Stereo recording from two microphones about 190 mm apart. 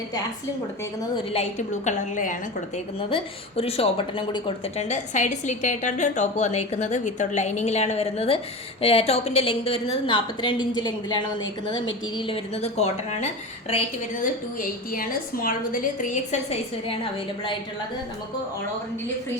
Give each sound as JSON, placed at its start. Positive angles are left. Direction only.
{"t": 1.3, "sound": "a woman's voice", "side_deg": 35}
{"t": 3.6, "sound": "a woman's voice", "side_deg": 30}
{"t": 14.6, "sound": "a woman's voice", "side_deg": 50}